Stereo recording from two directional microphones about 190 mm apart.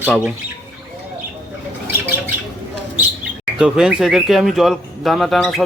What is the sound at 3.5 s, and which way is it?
Speech, 5° right (ahead or behind).